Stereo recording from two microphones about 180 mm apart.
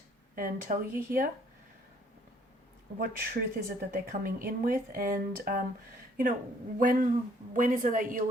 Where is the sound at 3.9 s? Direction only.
55° right (ahead or behind).